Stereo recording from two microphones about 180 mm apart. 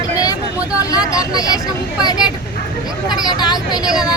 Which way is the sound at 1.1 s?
20° left (ahead or behind).